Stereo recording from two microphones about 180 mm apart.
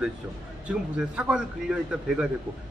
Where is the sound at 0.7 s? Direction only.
5° right (ahead or behind).